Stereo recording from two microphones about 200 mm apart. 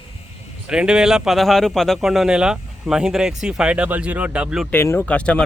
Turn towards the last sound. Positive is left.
turn(degrees=5)  # may be behind; listen again after turning